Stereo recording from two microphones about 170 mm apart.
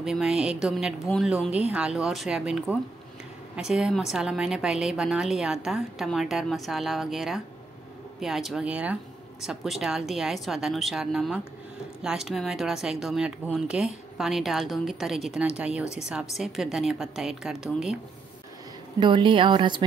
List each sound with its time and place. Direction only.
0.0 s a woman's voice: 5° right (ahead or behind)
18.9 s a woman's voice: 30° right (ahead or behind)